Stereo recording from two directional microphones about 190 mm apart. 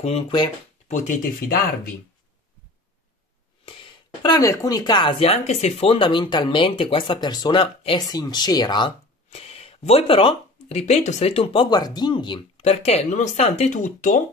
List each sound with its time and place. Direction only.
0.0 s speech: 30° left (ahead or behind)
0.8 s speech: 40° left (ahead or behind)
3.6 s speech: 25° left (ahead or behind)
12.6 s speech: 35° left (ahead or behind)